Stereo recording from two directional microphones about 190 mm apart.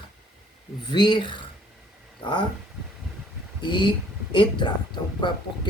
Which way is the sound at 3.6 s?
25° left (ahead or behind).